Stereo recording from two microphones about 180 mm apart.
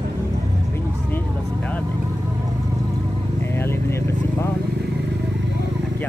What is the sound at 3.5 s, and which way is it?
Vehicle, 15° left (ahead or behind).